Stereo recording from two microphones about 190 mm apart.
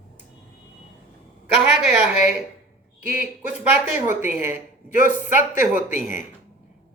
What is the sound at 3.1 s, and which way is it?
Speech, 10° right (ahead or behind).